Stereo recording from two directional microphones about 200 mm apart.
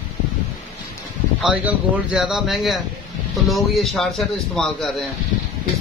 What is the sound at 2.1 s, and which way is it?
A man's voice, centre (ahead or behind).